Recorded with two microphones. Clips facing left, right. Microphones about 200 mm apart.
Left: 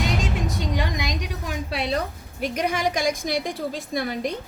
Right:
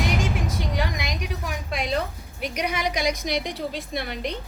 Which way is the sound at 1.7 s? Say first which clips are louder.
Left 1 dB; 35° left (ahead or behind).